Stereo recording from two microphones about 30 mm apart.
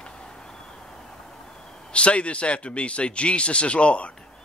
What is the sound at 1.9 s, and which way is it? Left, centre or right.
A man's voice, left.